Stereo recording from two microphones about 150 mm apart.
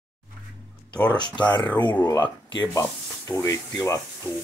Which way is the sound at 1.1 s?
30° left (ahead or behind).